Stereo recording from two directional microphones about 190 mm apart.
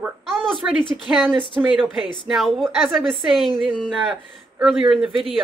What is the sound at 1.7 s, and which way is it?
Speech, centre (ahead or behind).